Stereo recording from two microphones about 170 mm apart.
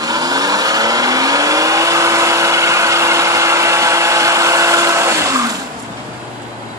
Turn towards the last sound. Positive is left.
turn(degrees=-20)  # may be behind; listen again after turning